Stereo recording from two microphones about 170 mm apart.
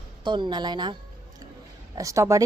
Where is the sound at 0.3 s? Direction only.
25° right (ahead or behind).